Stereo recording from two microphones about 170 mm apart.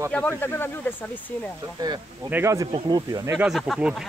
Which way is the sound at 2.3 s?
15° right (ahead or behind).